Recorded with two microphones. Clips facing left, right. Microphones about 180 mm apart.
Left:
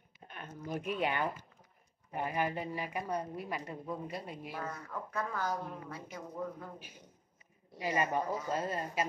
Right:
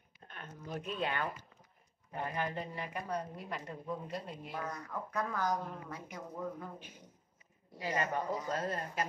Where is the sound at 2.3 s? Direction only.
10° left (ahead or behind).